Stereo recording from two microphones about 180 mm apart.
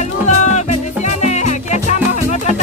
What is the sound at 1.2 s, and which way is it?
Music, 40° left (ahead or behind).